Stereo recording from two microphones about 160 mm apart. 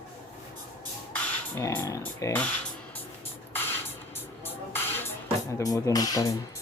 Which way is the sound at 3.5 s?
15° left (ahead or behind).